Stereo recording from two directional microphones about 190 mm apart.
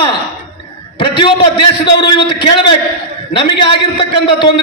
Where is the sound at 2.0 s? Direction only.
25° left (ahead or behind).